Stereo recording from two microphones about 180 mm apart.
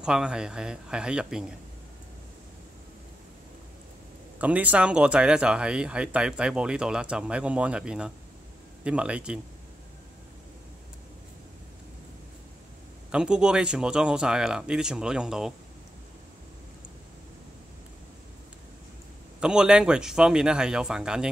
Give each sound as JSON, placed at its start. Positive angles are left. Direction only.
{"t": 0.0, "sound": "speech", "side_deg": -5}
{"t": 4.4, "sound": "a man's voice", "side_deg": -10}
{"t": 13.1, "sound": "speech", "side_deg": -5}
{"t": 19.4, "sound": "speech", "side_deg": -5}